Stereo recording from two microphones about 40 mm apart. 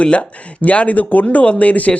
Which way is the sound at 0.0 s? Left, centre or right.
Left.